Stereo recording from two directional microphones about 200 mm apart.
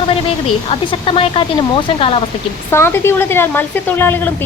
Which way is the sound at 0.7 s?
30° left (ahead or behind).